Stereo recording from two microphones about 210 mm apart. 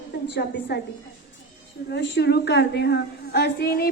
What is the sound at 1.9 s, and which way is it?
Music, 55° left (ahead or behind).